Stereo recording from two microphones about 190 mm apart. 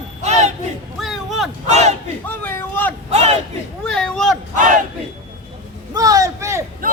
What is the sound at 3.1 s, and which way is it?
Battle cry, 35° right (ahead or behind).